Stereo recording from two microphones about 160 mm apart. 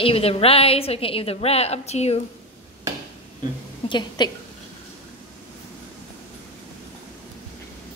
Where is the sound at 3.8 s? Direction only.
30° left (ahead or behind).